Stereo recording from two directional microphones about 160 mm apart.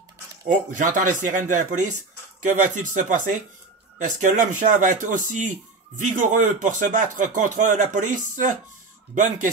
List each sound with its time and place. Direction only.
0.5 s a man's voice: 55° right (ahead or behind)